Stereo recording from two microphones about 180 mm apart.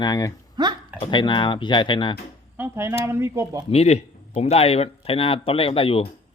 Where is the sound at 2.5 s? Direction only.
15° right (ahead or behind).